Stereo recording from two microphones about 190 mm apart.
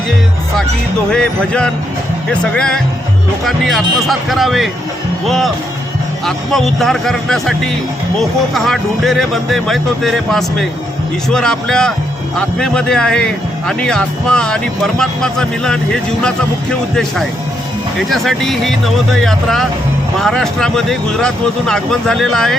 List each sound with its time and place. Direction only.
1.1 s speech: 5° left (ahead or behind)
6.2 s speech: centre (ahead or behind)